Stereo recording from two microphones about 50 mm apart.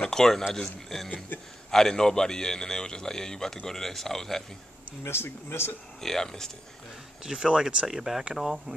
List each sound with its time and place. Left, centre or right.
0.0 s speech: centre
5.0 s speech: left
5.9 s speech: centre
7.2 s speech: centre